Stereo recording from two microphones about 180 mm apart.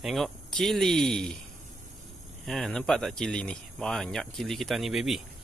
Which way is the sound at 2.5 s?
Centre (ahead or behind).